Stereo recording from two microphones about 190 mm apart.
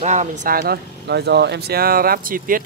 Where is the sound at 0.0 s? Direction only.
35° right (ahead or behind).